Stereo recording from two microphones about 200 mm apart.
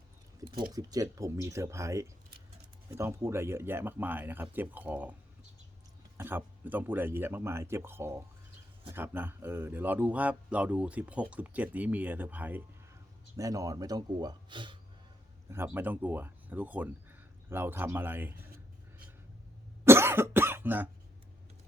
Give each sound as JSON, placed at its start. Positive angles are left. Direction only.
{"t": 0.4, "sound": "speech", "side_deg": -45}
{"t": 0.7, "sound": "speech", "side_deg": -20}
{"t": 6.1, "sound": "speech", "side_deg": -10}
{"t": 15.4, "sound": "speech", "side_deg": -10}
{"t": 19.8, "sound": "cough", "side_deg": -10}